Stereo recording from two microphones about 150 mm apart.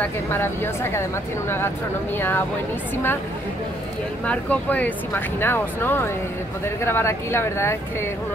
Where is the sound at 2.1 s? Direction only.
15° left (ahead or behind).